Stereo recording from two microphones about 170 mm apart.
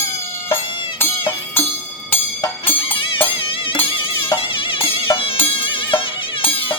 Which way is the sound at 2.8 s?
30° left (ahead or behind).